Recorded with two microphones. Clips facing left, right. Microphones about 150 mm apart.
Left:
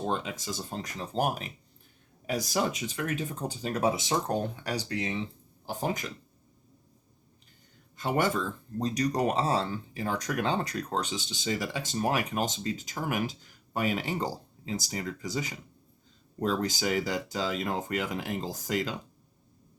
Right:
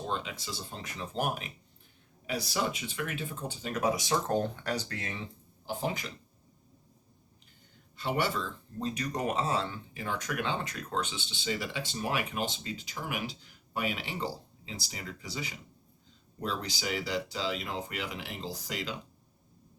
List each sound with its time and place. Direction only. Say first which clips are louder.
0.1 s speech: left 4 dB; 45° left (ahead or behind); by 5.2 s 20° left (ahead or behind)
5.6 s speech: left 2 dB; 45° left (ahead or behind)
7.9 s speech: left 4 dB; 45° left (ahead or behind)